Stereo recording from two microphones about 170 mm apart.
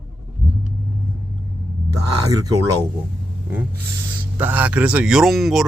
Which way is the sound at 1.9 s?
20° right (ahead or behind).